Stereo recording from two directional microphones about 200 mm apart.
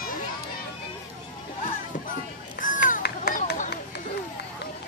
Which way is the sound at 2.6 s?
40° left (ahead or behind).